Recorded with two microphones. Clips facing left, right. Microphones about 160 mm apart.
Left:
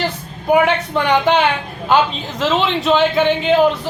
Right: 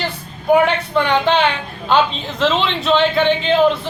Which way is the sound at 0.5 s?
10° left (ahead or behind).